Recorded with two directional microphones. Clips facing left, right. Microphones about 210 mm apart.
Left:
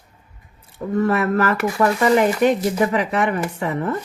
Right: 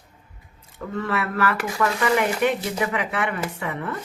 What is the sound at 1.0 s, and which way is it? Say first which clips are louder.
Speech: left 7 dB; 40° left (ahead or behind).